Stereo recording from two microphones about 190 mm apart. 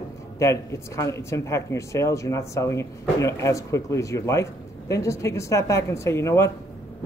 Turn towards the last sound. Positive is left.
turn(degrees=15)  # may be behind; listen again after turning